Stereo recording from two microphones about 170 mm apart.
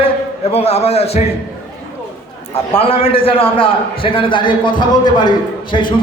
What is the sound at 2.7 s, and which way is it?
A man's voice, 35° left (ahead or behind).